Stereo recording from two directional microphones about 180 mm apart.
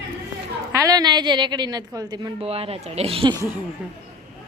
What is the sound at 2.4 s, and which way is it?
Speech, 35° right (ahead or behind).